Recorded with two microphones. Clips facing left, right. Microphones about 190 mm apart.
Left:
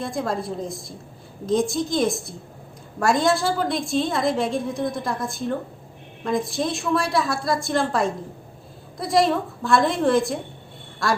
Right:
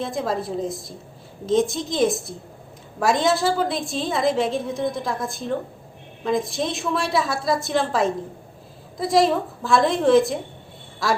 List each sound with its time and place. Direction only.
0.0 s a woman's voice: centre (ahead or behind)